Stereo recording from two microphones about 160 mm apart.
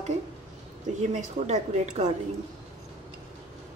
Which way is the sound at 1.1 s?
45° right (ahead or behind).